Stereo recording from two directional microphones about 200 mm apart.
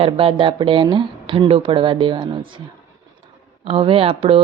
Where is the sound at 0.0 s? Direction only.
25° right (ahead or behind).